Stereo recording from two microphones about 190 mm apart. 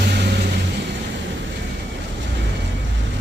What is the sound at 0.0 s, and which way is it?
Vehicle, 60° right (ahead or behind).